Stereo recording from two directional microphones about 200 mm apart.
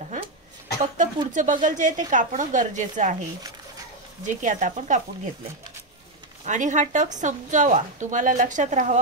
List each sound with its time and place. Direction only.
0.9 s a woman's voice: 40° right (ahead or behind)
4.3 s a woman's voice: 40° right (ahead or behind)
6.4 s a woman's voice: 40° right (ahead or behind)